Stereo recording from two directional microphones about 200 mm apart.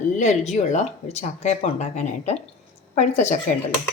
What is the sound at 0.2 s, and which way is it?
A woman's voice, 35° left (ahead or behind).